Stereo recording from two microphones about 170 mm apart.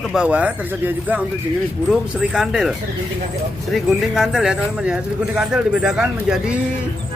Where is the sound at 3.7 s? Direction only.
Centre (ahead or behind).